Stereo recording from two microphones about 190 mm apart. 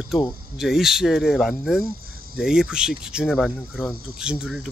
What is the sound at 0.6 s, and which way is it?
Speech, centre (ahead or behind).